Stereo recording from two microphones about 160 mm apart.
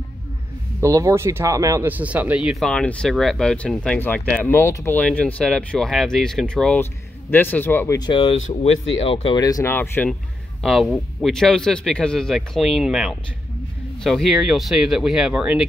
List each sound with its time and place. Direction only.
0.7 s speech: 20° right (ahead or behind); by 8.1 s 15° left (ahead or behind)
8.1 s speech: 30° left (ahead or behind); by 10.1 s 10° left (ahead or behind)
10.6 s speech: centre (ahead or behind)